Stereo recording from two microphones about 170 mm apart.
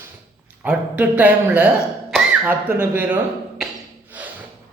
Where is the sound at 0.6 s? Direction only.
10° right (ahead or behind).